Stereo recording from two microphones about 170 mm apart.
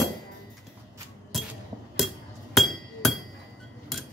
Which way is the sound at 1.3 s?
Centre (ahead or behind).